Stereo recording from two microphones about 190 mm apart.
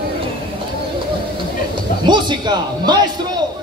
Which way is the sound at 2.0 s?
25° right (ahead or behind).